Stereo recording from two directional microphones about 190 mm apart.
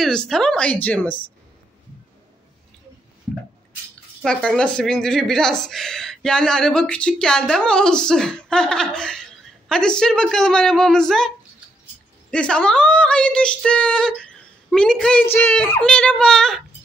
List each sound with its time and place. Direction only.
0.0 s speech: centre (ahead or behind)
4.2 s speech: 5° left (ahead or behind)
12.3 s speech: 5° left (ahead or behind)